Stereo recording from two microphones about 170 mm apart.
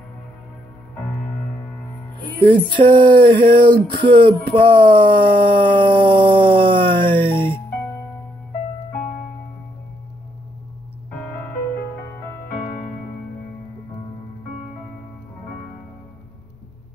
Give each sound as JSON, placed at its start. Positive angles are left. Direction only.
{"t": 2.8, "sound": "speech", "side_deg": -30}
{"t": 11.1, "sound": "music", "side_deg": 10}